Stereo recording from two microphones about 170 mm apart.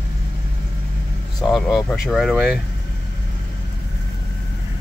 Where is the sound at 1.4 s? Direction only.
Centre (ahead or behind).